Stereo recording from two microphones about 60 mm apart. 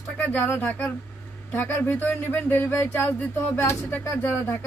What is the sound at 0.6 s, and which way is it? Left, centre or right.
Speech, left.